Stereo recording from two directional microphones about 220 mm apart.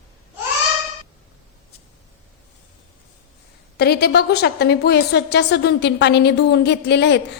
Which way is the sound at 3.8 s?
50° left (ahead or behind).